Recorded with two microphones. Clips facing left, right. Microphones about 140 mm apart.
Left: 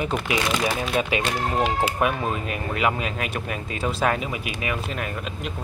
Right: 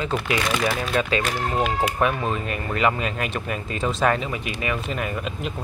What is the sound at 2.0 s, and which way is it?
Speech, 5° left (ahead or behind).